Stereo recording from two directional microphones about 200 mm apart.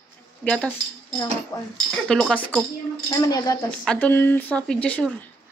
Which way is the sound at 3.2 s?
20° left (ahead or behind).